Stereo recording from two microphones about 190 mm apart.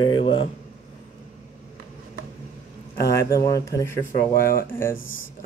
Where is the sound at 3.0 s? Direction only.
15° left (ahead or behind).